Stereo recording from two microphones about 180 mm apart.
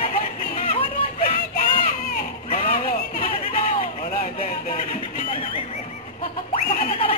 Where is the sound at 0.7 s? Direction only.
30° left (ahead or behind).